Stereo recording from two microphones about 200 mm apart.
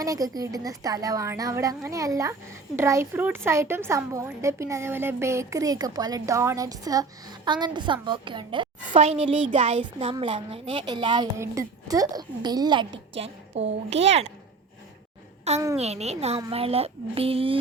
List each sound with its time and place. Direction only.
0.0 s a woman's voice: 15° right (ahead or behind)
15.5 s a child's voice: 35° right (ahead or behind)